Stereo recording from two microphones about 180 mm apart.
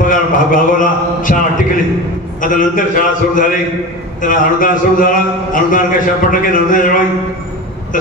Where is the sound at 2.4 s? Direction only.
50° left (ahead or behind).